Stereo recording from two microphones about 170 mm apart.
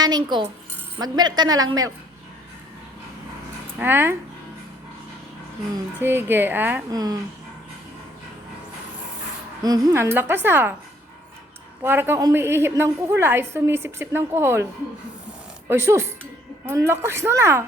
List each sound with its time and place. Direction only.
0.0 s a woman's voice: 25° right (ahead or behind)
3.8 s a woman's voice: 10° right (ahead or behind)
5.7 s a woman's voice: 10° right (ahead or behind)
6.9 s a woman's voice: 20° right (ahead or behind)
9.6 s a woman's voice: 20° right (ahead or behind)
11.8 s a woman's voice: 10° right (ahead or behind)
15.7 s a woman's voice: 15° right (ahead or behind)